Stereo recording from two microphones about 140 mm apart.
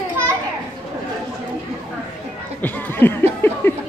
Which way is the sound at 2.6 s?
15° left (ahead or behind).